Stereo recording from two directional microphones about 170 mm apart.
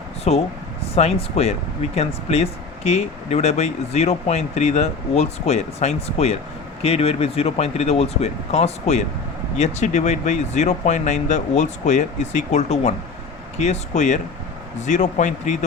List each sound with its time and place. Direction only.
0.3 s speech: 40° left (ahead or behind)